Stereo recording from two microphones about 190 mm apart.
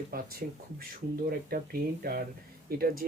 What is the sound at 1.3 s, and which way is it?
Speech, 50° right (ahead or behind).